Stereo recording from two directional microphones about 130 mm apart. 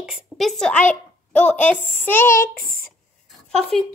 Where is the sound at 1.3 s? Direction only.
65° left (ahead or behind).